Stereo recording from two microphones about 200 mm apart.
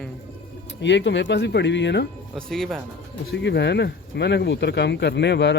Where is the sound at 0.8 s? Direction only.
60° left (ahead or behind).